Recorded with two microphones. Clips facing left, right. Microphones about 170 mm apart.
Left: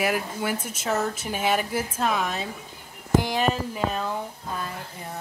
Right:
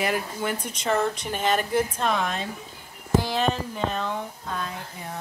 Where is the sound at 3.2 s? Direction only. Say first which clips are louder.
Left 1 dB; 15° left (ahead or behind).